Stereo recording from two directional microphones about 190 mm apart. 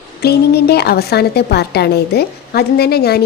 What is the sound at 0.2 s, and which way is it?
A woman's voice, 60° left (ahead or behind).